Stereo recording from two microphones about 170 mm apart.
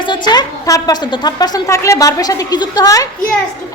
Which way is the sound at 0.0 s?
25° left (ahead or behind).